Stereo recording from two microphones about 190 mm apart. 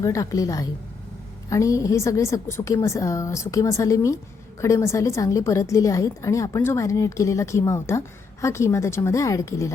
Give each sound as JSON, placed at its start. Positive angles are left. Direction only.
{"t": 0.0, "sound": "a woman's voice", "side_deg": 15}